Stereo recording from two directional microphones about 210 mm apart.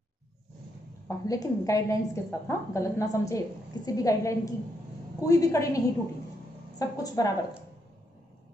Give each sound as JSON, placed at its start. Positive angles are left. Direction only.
{"t": 1.0, "sound": "a woman's voice", "side_deg": 15}
{"t": 6.8, "sound": "a woman's voice", "side_deg": 15}